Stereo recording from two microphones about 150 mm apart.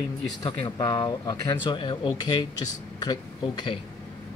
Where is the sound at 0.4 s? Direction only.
30° left (ahead or behind).